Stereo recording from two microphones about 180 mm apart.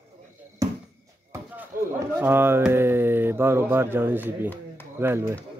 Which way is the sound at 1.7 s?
50° right (ahead or behind).